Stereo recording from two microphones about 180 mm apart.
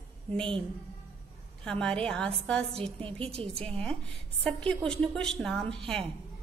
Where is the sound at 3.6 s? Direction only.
5° left (ahead or behind).